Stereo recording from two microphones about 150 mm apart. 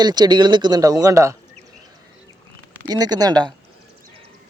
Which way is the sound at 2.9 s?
25° right (ahead or behind).